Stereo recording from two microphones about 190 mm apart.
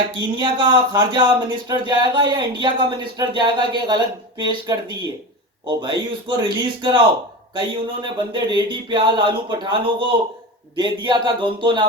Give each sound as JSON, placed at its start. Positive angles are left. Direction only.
{"t": 0.1, "sound": "speech", "side_deg": -25}